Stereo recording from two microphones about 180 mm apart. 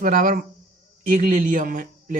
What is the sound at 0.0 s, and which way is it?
Speech, 45° right (ahead or behind).